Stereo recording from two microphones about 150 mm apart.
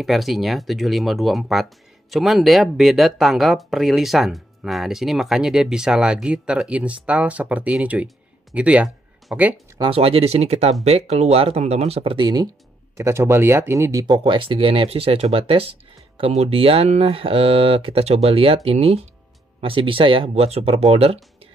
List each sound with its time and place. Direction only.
0.0 s speech: centre (ahead or behind)
9.8 s speech: 40° right (ahead or behind)
12.9 s speech: 20° right (ahead or behind); by 21.2 s 40° right (ahead or behind)